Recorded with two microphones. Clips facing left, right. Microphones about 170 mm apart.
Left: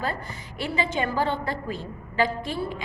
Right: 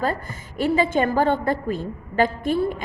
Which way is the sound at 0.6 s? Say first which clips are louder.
Right 7 dB; 45° right (ahead or behind).